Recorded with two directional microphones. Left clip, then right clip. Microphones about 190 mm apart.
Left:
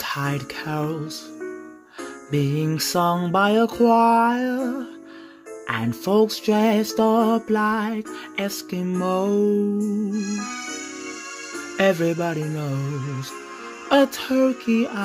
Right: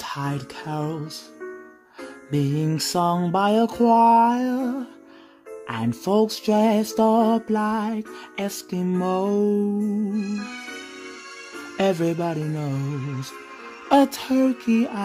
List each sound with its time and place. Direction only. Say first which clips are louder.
0.0 s speech: left 3 dB; centre (ahead or behind)
2.3 s music: left 1 dB; 5° right (ahead or behind)
10.3 s music: left 3 dB; 40° left (ahead or behind)
11.7 s music: left 2 dB; 10° right (ahead or behind)
12.8 s music: left 1 dB; 40° left (ahead or behind)
13.8 s music: even; 15° right (ahead or behind)